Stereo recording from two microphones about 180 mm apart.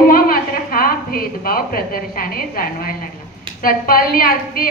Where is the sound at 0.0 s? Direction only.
55° left (ahead or behind).